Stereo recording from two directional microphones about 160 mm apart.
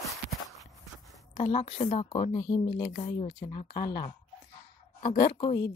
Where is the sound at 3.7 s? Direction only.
75° left (ahead or behind).